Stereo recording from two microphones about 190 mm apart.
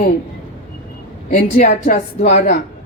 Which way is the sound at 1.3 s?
40° left (ahead or behind).